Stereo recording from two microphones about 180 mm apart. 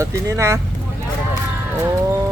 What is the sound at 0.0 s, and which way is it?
Speech, 15° right (ahead or behind).